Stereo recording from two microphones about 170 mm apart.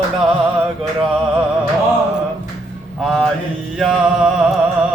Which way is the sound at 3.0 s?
Centre (ahead or behind).